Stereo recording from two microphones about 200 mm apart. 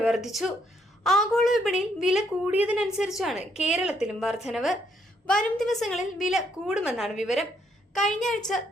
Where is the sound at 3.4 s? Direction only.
35° left (ahead or behind).